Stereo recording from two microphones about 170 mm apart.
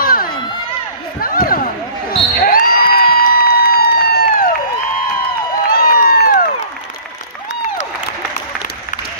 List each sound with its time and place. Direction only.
0.0 s crowd: 60° left (ahead or behind)
1.2 s basketball bounce: 55° left (ahead or behind)
2.3 s a sound: 60° left (ahead or behind)
5.7 s crowd: 60° left (ahead or behind)